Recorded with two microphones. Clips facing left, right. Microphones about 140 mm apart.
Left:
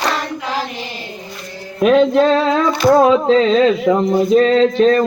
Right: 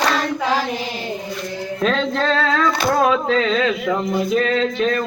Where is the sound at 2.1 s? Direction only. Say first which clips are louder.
Left 6 dB; 15° left (ahead or behind).